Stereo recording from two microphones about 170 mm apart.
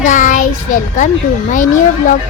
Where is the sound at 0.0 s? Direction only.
45° left (ahead or behind).